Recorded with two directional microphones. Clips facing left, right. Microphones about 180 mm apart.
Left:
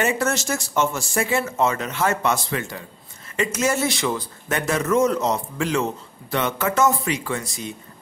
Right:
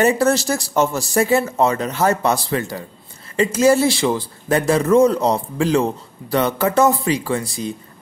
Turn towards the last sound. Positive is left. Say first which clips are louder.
# right 6 dB
turn(degrees=-30)  # may be behind; listen again after turning